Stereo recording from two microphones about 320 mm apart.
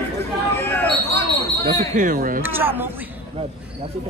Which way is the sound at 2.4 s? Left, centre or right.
Centre.